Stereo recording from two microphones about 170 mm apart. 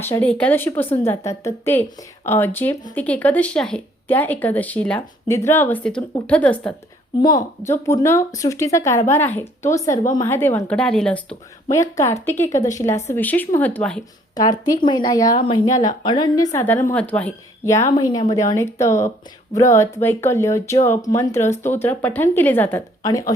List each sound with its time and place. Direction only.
0.0 s speech: 10° left (ahead or behind)
7.2 s speech: 20° left (ahead or behind); by 11.3 s 5° left (ahead or behind)
11.7 s speech: 20° left (ahead or behind)
14.3 s speech: 20° left (ahead or behind)